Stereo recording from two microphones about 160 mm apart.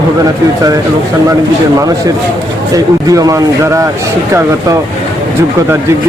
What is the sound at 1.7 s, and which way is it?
A man's voice, 20° right (ahead or behind).